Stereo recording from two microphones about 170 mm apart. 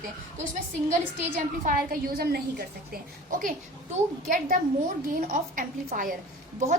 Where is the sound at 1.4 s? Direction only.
55° right (ahead or behind).